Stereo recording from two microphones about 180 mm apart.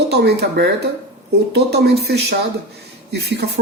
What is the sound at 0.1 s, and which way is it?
Speech, 65° right (ahead or behind).